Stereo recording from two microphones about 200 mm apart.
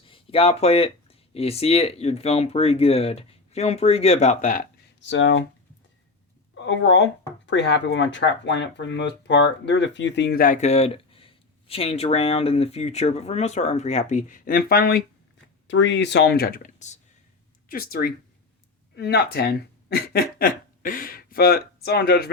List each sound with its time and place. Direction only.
0.1 s speech: 30° left (ahead or behind)
5.0 s speech: 70° left (ahead or behind)
6.6 s speech: 65° left (ahead or behind)
15.6 s speech: 65° left (ahead or behind)